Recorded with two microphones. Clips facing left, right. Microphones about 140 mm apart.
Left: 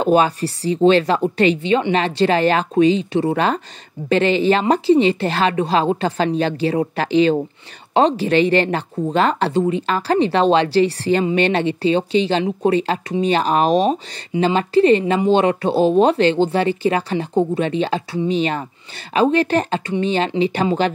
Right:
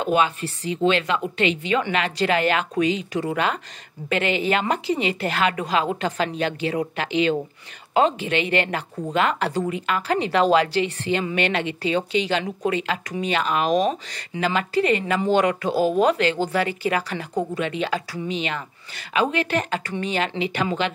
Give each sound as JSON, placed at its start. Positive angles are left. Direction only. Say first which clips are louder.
{"t": 0.0, "sound": "speech", "louder": "left 6 dB", "side_deg": 35}